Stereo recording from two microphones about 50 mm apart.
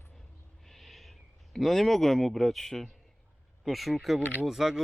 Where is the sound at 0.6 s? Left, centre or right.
Centre.